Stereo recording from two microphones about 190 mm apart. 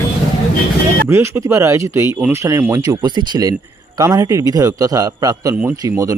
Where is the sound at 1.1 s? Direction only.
15° right (ahead or behind).